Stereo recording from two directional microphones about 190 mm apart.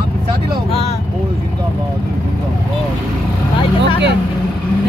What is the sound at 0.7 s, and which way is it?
Vehicle, 30° left (ahead or behind).